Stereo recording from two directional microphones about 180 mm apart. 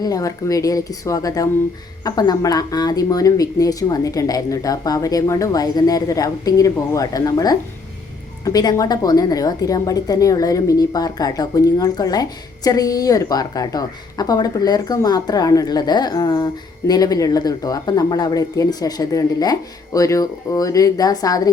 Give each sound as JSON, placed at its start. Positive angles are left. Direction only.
{"t": 0.0, "sound": "a woman's voice", "side_deg": 20}